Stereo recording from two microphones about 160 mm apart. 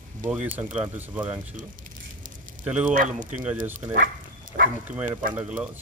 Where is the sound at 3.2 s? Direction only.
55° right (ahead or behind).